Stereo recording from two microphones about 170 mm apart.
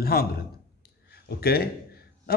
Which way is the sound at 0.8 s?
65° left (ahead or behind).